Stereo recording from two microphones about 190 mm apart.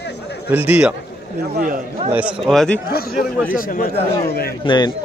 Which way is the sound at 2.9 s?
55° left (ahead or behind).